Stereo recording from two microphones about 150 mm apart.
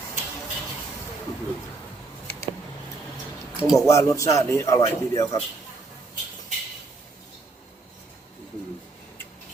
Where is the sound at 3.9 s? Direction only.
20° left (ahead or behind).